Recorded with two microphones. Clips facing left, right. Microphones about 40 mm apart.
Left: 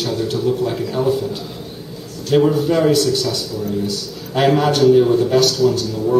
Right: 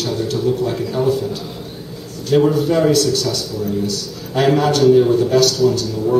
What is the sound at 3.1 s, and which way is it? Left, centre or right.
A man's voice, left.